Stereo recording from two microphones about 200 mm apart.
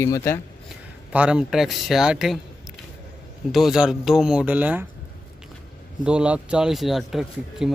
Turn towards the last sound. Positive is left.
turn(degrees=0)  # may be behind; listen again after turning